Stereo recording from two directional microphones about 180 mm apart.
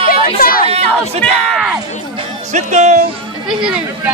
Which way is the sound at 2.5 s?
40° right (ahead or behind).